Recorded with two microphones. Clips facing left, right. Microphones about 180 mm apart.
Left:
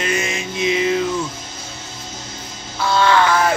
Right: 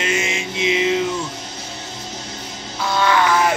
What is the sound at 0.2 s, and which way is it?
Music, 20° right (ahead or behind).